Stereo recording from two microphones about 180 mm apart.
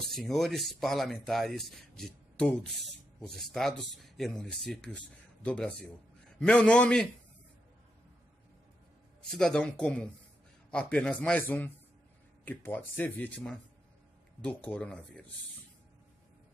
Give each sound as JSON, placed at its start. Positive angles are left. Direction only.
{"t": 0.0, "sound": "speech", "side_deg": 0}
{"t": 9.3, "sound": "speech", "side_deg": 5}